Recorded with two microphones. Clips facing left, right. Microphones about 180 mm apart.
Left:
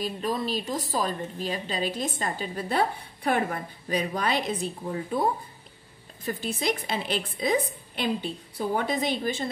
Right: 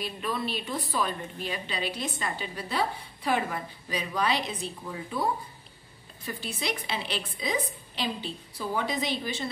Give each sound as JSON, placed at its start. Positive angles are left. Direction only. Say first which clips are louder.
{"t": 0.0, "sound": "a woman's voice", "louder": "left 3 dB", "side_deg": 40}